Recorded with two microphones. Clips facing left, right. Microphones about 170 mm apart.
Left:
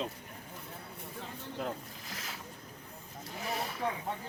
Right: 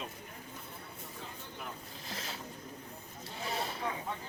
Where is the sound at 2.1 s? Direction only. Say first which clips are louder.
Right 3 dB; 30° right (ahead or behind).